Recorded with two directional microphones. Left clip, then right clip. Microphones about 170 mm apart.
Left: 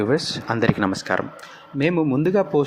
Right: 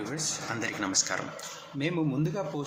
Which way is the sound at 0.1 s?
45° left (ahead or behind).